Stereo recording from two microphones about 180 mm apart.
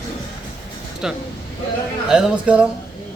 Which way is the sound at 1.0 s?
5° right (ahead or behind).